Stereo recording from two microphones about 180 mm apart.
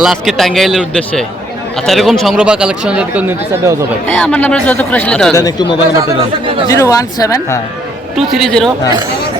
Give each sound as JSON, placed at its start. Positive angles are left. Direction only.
{"t": 0.0, "sound": "speech", "side_deg": 0}
{"t": 4.0, "sound": "speech", "side_deg": 10}
{"t": 5.3, "sound": "speech", "side_deg": 20}
{"t": 8.1, "sound": "speech", "side_deg": 0}